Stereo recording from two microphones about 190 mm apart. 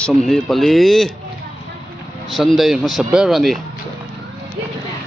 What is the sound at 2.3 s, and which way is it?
Speech, centre (ahead or behind).